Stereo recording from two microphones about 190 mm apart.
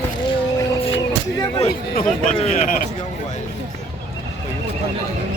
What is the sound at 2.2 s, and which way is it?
Speech, 40° left (ahead or behind).